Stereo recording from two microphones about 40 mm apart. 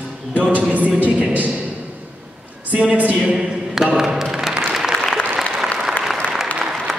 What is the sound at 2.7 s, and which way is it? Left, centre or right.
Speech, right.